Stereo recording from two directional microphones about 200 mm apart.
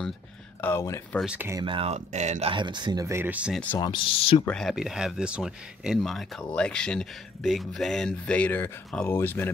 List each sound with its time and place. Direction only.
0.6 s speech: 10° left (ahead or behind)
1.2 s speech: 10° right (ahead or behind)
1.7 s speech: 30° right (ahead or behind)
2.5 s speech: 20° right (ahead or behind); by 3.6 s 5° right (ahead or behind)
3.7 s speech: 20° left (ahead or behind)
4.5 s speech: centre (ahead or behind)